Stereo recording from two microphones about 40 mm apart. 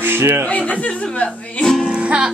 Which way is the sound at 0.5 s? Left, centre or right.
Left.